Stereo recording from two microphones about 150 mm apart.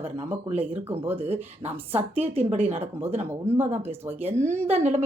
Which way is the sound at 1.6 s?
35° right (ahead or behind).